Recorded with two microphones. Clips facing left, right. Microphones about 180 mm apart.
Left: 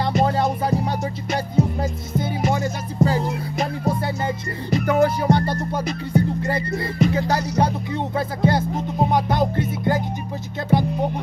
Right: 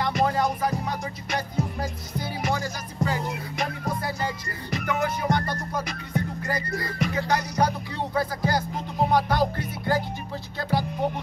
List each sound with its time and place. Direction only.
0.0 s music: 30° left (ahead or behind)